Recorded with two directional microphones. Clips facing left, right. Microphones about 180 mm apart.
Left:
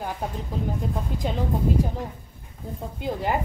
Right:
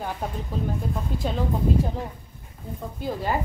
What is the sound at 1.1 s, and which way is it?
Speech, 15° left (ahead or behind).